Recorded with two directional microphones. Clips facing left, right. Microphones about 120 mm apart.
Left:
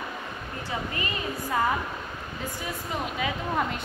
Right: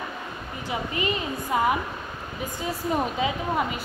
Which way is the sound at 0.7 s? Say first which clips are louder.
Right 5 dB; 20° right (ahead or behind).